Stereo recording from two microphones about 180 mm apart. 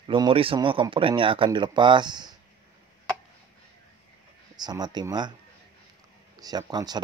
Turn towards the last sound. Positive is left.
turn(degrees=-20)  # may be behind; listen again after turning